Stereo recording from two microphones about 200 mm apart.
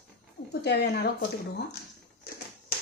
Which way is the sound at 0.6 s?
55° left (ahead or behind).